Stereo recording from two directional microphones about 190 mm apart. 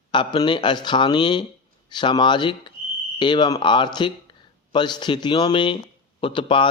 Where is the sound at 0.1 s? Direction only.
25° left (ahead or behind).